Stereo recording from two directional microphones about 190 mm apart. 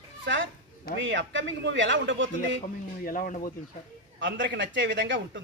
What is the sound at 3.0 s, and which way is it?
Speech, 45° left (ahead or behind).